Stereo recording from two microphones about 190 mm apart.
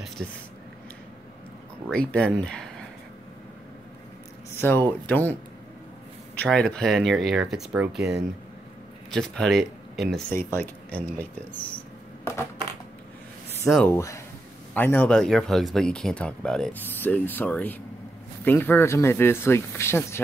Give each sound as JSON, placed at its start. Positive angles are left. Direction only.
{"t": 1.9, "sound": "speech", "side_deg": 5}
{"t": 4.6, "sound": "speech", "side_deg": 10}
{"t": 6.3, "sound": "speech", "side_deg": 5}
{"t": 13.7, "sound": "speech", "side_deg": 5}
{"t": 13.9, "sound": "speech", "side_deg": 15}